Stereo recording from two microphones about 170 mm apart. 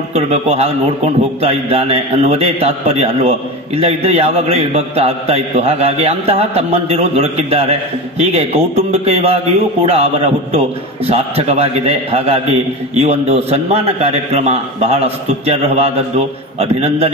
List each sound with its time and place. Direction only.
0.1 s a man's voice: 40° right (ahead or behind)